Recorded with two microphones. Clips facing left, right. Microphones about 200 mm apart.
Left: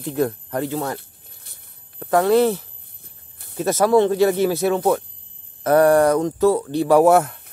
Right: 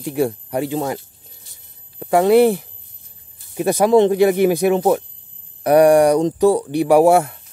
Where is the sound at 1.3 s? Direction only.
60° left (ahead or behind).